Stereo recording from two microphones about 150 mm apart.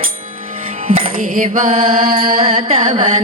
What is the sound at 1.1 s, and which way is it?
Music, 65° right (ahead or behind).